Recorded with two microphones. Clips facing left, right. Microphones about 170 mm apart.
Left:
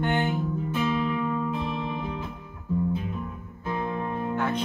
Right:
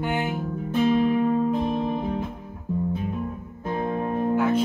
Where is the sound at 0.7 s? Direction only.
45° right (ahead or behind).